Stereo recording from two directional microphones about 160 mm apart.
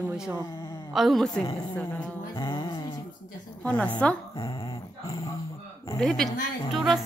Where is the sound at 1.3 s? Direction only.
20° left (ahead or behind).